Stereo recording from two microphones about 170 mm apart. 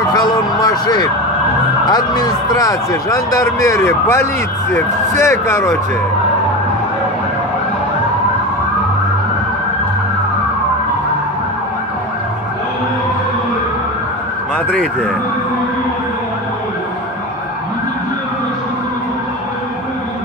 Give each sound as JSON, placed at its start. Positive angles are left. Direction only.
{"t": 0.1, "sound": "a sound", "side_deg": 25}
{"t": 1.9, "sound": "speech", "side_deg": 25}
{"t": 14.7, "sound": "speech", "side_deg": 5}